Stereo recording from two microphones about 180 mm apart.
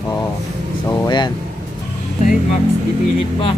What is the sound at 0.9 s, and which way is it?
Speech, 25° left (ahead or behind).